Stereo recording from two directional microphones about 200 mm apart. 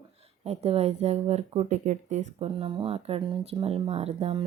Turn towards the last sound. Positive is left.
turn(degrees=-30)  # may be behind; listen again after turning